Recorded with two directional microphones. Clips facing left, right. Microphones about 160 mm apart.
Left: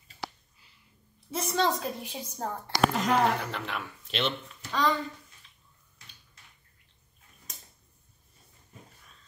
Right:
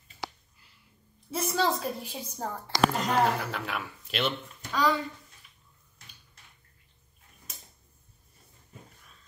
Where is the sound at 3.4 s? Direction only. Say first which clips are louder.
Right 1 dB; 5° right (ahead or behind).